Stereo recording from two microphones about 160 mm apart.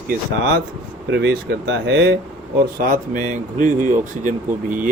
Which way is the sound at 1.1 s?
90° right.